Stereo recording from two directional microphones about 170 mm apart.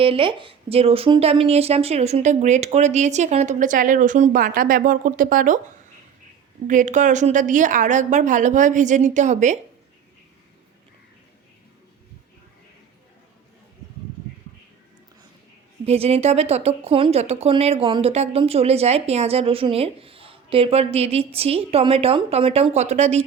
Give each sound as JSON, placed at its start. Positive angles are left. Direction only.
{"t": 0.0, "sound": "speech", "side_deg": -30}
{"t": 6.7, "sound": "speech", "side_deg": -50}
{"t": 15.9, "sound": "speech", "side_deg": -35}